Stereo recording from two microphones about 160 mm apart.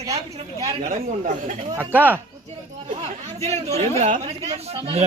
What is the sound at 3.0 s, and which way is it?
Speech, 40° right (ahead or behind).